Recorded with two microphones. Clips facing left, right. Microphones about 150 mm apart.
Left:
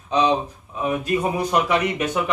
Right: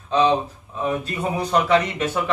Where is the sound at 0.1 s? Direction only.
15° left (ahead or behind).